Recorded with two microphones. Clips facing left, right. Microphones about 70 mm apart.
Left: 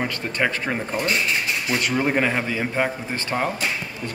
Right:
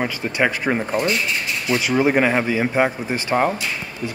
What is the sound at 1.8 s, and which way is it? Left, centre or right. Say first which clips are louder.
Speech: right 5 dB; centre.